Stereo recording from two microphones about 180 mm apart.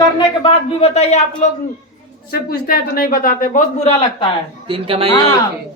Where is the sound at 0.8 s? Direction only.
35° left (ahead or behind).